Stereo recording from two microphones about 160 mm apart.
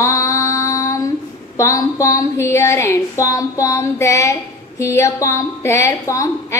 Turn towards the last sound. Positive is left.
turn(degrees=20)  # may be behind; listen again after turning